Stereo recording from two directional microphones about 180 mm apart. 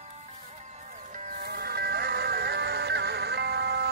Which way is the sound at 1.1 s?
45° right (ahead or behind).